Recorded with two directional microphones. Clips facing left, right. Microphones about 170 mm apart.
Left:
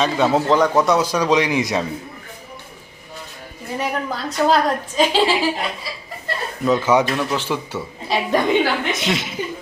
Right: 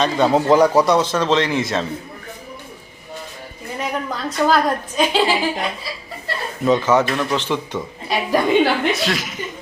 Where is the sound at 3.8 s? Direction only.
Centre (ahead or behind).